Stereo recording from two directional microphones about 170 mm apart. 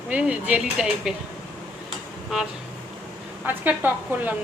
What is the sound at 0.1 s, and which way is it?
Speech, 5° right (ahead or behind).